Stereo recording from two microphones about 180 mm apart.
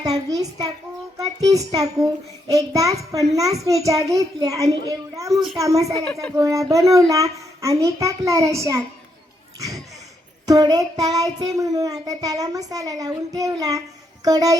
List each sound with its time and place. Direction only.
0.0 s child singing: 20° right (ahead or behind)
6.3 s a child's voice: 15° right (ahead or behind)
10.4 s child singing: 20° right (ahead or behind)